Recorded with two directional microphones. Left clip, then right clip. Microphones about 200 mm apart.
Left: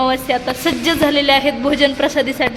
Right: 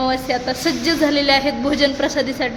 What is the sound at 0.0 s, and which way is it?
A woman's voice, 5° left (ahead or behind).